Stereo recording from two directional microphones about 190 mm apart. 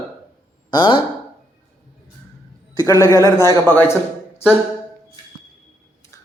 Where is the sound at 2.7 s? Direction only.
15° left (ahead or behind).